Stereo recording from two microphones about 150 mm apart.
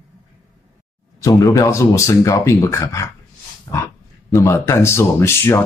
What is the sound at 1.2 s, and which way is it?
Speech, 25° left (ahead or behind).